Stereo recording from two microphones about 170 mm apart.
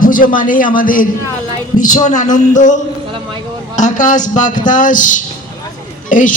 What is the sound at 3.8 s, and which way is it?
A man's voice, 45° left (ahead or behind).